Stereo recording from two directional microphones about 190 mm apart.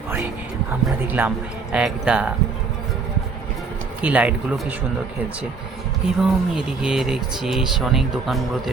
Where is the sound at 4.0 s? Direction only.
5° right (ahead or behind).